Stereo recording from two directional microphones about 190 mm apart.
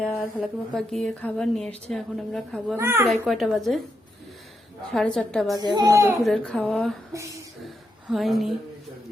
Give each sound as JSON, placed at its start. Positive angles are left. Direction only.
{"t": 0.0, "sound": "a woman's voice", "side_deg": 0}
{"t": 2.7, "sound": "a woman's voice", "side_deg": -15}
{"t": 3.2, "sound": "a woman's voice", "side_deg": 0}
{"t": 4.9, "sound": "a woman's voice", "side_deg": 5}
{"t": 5.5, "sound": "a child's voice", "side_deg": -20}
{"t": 6.2, "sound": "a woman's voice", "side_deg": 5}
{"t": 7.1, "sound": "a woman's voice", "side_deg": -15}
{"t": 7.6, "sound": "a sound", "side_deg": 0}